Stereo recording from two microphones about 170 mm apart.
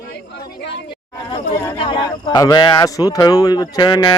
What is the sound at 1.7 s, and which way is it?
A man's voice, 30° left (ahead or behind).